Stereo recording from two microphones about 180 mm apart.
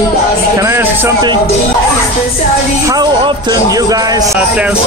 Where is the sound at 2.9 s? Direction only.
20° right (ahead or behind).